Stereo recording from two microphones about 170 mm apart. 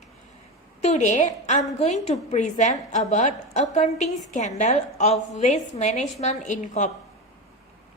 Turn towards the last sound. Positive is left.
turn(degrees=45)  # may be behind; listen again after turning